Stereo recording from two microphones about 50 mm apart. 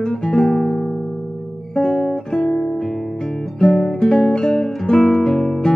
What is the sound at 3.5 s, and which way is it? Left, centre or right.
Guitar, centre.